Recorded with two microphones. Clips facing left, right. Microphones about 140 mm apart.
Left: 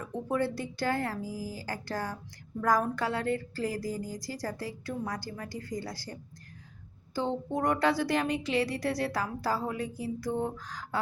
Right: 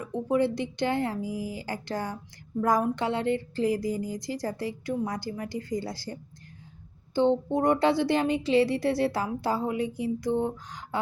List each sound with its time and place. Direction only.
0.0 s speech: 20° right (ahead or behind)